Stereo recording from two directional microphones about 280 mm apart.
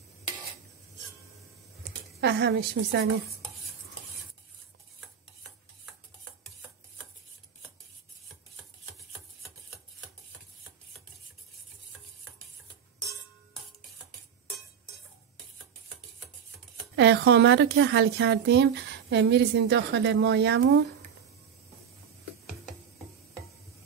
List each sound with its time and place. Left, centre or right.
2.1 s a woman's voice: right
16.9 s a woman's voice: right